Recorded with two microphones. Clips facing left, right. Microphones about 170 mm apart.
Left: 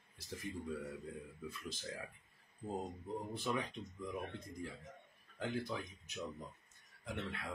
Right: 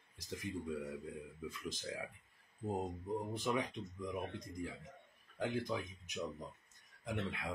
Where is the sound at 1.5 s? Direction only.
15° right (ahead or behind).